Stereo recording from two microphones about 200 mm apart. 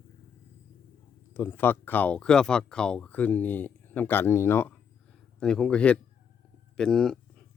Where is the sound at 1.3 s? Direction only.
10° left (ahead or behind).